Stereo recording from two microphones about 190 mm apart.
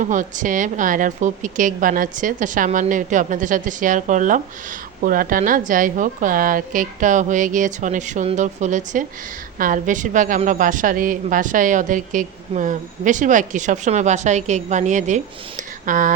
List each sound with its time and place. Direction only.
0.0 s a woman's voice: 40° right (ahead or behind)